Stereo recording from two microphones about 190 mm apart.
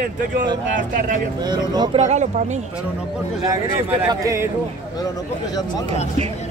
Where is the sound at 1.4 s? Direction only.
20° right (ahead or behind).